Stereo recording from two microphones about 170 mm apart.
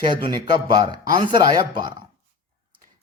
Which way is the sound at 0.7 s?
25° right (ahead or behind).